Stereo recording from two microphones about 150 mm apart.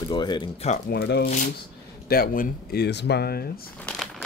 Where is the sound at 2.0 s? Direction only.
75° left (ahead or behind); by 3.4 s 90° left.